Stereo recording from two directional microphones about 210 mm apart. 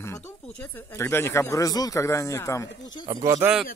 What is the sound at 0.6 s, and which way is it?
Speech, 10° left (ahead or behind).